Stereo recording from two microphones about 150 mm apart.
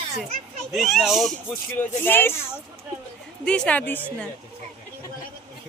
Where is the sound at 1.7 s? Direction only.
15° left (ahead or behind).